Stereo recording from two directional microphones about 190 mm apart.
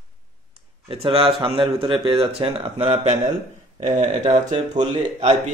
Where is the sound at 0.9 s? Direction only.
30° right (ahead or behind).